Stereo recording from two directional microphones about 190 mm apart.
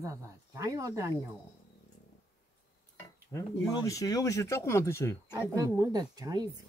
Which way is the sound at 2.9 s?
15° left (ahead or behind).